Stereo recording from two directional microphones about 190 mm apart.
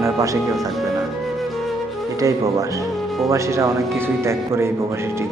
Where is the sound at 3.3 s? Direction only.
15° right (ahead or behind).